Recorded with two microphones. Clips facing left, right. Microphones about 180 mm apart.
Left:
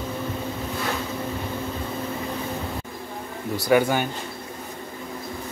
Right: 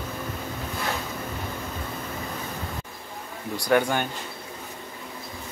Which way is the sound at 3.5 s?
5° left (ahead or behind).